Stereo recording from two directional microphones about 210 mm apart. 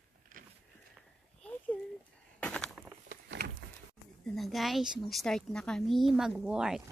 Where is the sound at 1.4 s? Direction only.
5° left (ahead or behind).